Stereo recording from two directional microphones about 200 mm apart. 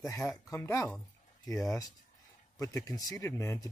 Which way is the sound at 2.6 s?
15° left (ahead or behind).